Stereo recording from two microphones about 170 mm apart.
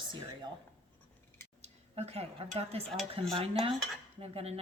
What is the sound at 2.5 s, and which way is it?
A woman's voice, 35° right (ahead or behind).